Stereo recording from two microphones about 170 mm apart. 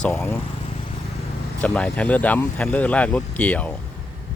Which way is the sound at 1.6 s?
5° left (ahead or behind).